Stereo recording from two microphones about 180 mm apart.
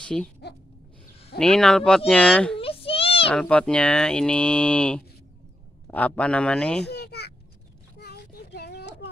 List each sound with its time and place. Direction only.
0.0 s speech: 5° left (ahead or behind)
1.4 s speech: 5° left (ahead or behind)
2.6 s a sound: 30° left (ahead or behind)
3.3 s speech: 5° left (ahead or behind)
6.9 s children playing: 65° left (ahead or behind)
8.0 s child singing: 70° left (ahead or behind)